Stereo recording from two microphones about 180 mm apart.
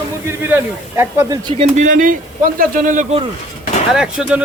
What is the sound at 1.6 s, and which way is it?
Speech, 45° right (ahead or behind).